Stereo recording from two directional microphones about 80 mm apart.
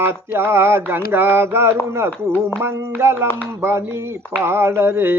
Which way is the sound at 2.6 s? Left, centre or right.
Right.